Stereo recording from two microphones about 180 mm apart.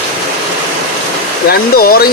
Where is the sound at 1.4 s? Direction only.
60° left (ahead or behind).